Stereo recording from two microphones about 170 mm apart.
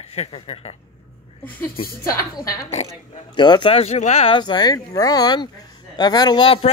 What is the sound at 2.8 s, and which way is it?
Speech, 40° left (ahead or behind).